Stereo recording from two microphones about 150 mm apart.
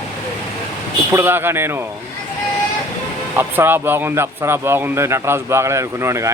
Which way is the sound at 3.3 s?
15° right (ahead or behind).